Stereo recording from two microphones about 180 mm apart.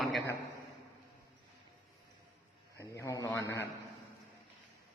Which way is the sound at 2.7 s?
15° left (ahead or behind).